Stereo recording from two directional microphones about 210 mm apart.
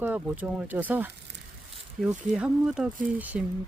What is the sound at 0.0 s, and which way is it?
Speech, 5° right (ahead or behind).